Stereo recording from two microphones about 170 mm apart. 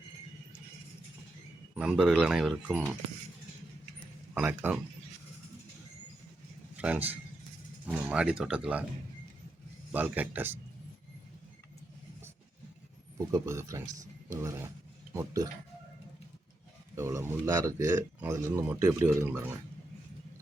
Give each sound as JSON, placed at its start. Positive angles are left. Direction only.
{"t": 1.7, "sound": "speech", "side_deg": -5}
{"t": 4.4, "sound": "speech", "side_deg": -10}
{"t": 6.7, "sound": "a man's voice", "side_deg": -10}
{"t": 9.9, "sound": "speech", "side_deg": -10}
{"t": 13.1, "sound": "speech", "side_deg": -20}
{"t": 16.9, "sound": "speech", "side_deg": -15}